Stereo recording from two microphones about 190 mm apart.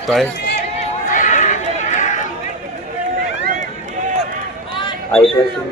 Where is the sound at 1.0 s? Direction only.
45° left (ahead or behind).